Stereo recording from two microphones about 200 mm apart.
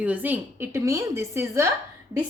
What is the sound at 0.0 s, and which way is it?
A woman's voice, 10° right (ahead or behind).